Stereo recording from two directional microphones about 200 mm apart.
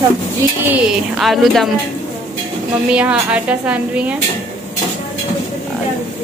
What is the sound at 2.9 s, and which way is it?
A woman's voice, 5° right (ahead or behind).